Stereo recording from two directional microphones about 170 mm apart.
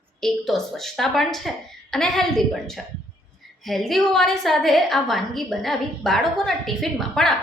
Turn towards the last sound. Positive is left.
turn(degrees=0)  # may be behind; listen again after turning